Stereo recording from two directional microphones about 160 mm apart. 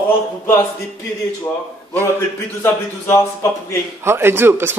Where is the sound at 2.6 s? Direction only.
15° left (ahead or behind).